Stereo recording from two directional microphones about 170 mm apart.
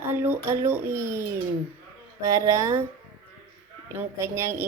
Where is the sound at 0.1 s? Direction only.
15° right (ahead or behind).